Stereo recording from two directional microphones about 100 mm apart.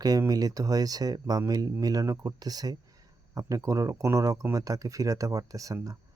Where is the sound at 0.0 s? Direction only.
40° right (ahead or behind).